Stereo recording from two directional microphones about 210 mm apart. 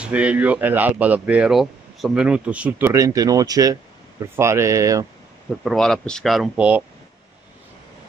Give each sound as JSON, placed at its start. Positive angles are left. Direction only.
{"t": 0.0, "sound": "speech", "side_deg": -5}
{"t": 5.6, "sound": "speech", "side_deg": 0}